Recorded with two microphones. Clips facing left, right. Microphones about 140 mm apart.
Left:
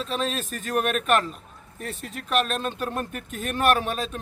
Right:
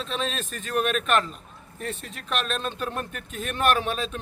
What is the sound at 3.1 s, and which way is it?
A man's voice, 45° left (ahead or behind).